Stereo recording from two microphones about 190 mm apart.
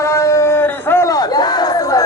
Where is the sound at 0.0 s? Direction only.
15° left (ahead or behind).